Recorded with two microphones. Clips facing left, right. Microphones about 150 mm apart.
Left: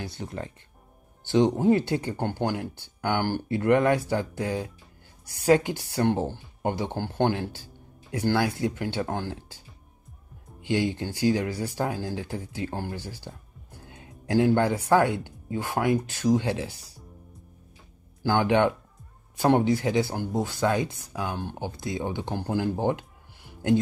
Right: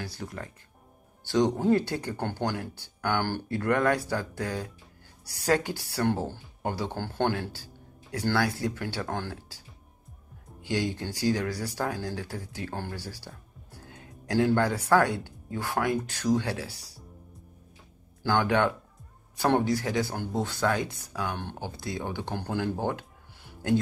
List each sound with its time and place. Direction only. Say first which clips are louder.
0.0 s speech: left 3 dB; 25° left (ahead or behind)
10.6 s speech: left 4 dB; 20° left (ahead or behind)
18.2 s speech: left 3 dB; 20° left (ahead or behind)